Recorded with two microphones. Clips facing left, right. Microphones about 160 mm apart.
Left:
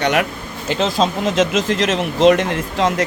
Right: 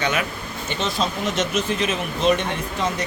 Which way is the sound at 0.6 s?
90° left.